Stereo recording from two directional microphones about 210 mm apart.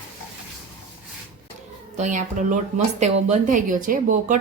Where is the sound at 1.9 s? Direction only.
35° right (ahead or behind).